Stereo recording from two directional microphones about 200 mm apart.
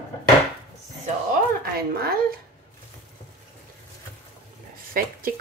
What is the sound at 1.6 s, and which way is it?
Speech, 50° right (ahead or behind).